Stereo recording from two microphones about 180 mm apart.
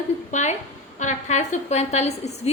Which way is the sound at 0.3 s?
40° left (ahead or behind).